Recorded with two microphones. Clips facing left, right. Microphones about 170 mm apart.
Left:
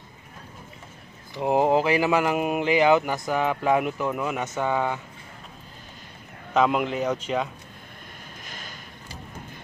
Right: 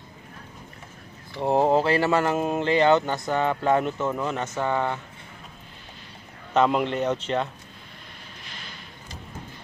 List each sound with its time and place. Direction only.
1.4 s speech: 10° left (ahead or behind)
6.5 s a man's voice: 5° left (ahead or behind)
8.5 s a sound: 45° left (ahead or behind)